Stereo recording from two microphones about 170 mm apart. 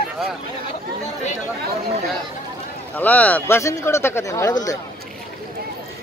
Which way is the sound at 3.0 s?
10° left (ahead or behind).